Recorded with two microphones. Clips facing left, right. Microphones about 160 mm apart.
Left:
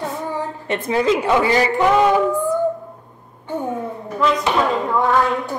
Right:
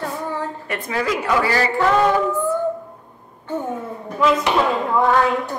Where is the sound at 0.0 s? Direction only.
15° left (ahead or behind).